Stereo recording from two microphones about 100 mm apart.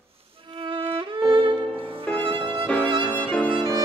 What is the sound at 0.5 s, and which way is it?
Music, 55° right (ahead or behind).